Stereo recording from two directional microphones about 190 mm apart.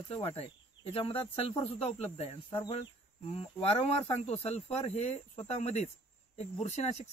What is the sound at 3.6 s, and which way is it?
Speech, 30° left (ahead or behind).